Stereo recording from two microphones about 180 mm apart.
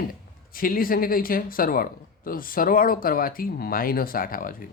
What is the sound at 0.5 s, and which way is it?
Speech, 50° left (ahead or behind).